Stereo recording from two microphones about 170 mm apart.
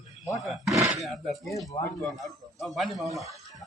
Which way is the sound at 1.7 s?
25° left (ahead or behind).